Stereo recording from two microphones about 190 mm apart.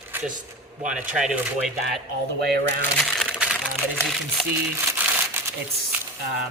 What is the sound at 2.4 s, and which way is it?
Speech, 60° right (ahead or behind).